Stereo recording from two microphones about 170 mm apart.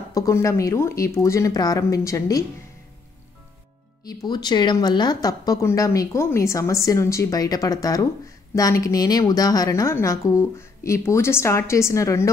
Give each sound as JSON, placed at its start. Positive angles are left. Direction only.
{"t": 0.1, "sound": "speech", "side_deg": 20}
{"t": 4.0, "sound": "a woman's voice", "side_deg": 25}